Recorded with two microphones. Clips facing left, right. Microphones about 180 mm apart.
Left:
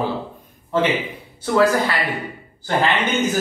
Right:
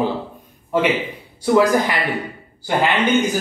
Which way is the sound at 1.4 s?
15° right (ahead or behind).